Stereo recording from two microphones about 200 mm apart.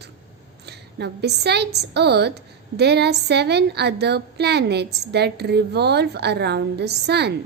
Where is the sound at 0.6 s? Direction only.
55° right (ahead or behind).